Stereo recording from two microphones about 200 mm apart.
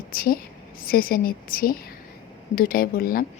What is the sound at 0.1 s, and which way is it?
A woman's voice, 45° left (ahead or behind).